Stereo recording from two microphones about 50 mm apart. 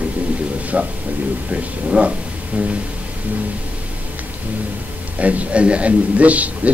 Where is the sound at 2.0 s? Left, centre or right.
Right.